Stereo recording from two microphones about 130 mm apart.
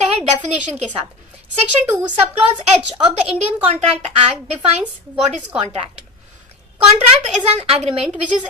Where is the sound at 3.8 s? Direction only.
50° right (ahead or behind).